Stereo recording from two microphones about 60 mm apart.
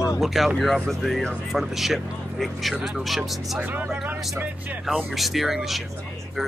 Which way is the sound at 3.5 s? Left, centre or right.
Right.